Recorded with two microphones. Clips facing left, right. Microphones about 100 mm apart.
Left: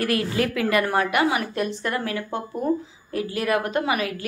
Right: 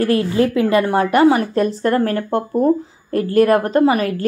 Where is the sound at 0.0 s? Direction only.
30° right (ahead or behind).